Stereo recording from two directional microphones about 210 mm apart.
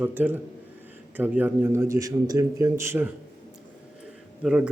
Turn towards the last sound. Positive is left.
turn(degrees=-5)  # may be behind; listen again after turning